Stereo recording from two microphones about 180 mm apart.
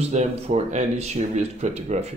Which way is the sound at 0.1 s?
40° right (ahead or behind).